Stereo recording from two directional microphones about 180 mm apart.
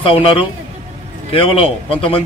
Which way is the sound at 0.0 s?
30° left (ahead or behind).